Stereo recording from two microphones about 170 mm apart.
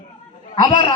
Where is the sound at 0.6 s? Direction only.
30° left (ahead or behind).